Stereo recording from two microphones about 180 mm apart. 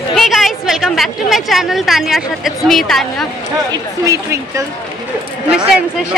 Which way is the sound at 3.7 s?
15° right (ahead or behind).